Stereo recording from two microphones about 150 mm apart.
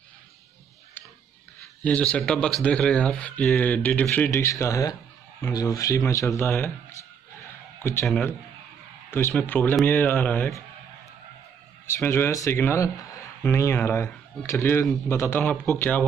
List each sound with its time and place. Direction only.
1.8 s speech: 10° left (ahead or behind)
7.8 s speech: 15° left (ahead or behind)
9.3 s speech: 10° left (ahead or behind)
11.8 s speech: 15° left (ahead or behind)